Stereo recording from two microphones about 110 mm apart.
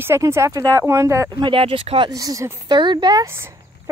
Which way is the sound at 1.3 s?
50° right (ahead or behind).